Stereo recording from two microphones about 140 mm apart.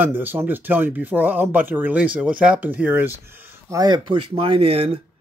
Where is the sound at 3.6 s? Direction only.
30° right (ahead or behind); by 4.9 s 45° right (ahead or behind).